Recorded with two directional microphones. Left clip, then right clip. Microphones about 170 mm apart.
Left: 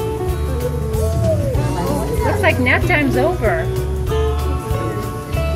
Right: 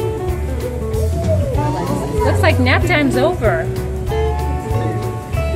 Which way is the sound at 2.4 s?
15° right (ahead or behind).